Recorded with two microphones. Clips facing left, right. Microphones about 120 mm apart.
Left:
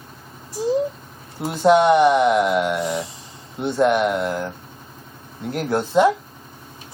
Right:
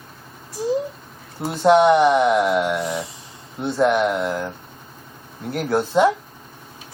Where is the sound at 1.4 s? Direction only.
Centre (ahead or behind).